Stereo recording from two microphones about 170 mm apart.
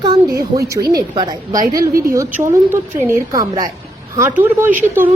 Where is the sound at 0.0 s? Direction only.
25° right (ahead or behind).